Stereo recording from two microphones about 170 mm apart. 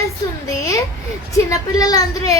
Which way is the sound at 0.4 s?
20° left (ahead or behind).